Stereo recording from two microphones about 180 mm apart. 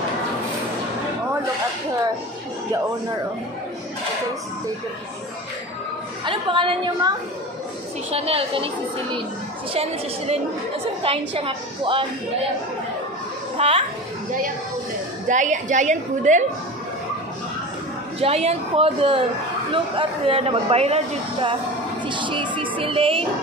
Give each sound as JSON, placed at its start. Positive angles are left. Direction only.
{"t": 6.2, "sound": "speech", "side_deg": -30}
{"t": 11.0, "sound": "speech", "side_deg": -30}
{"t": 13.6, "sound": "speech", "side_deg": -30}
{"t": 15.2, "sound": "a woman's voice", "side_deg": -45}
{"t": 18.2, "sound": "speech", "side_deg": -35}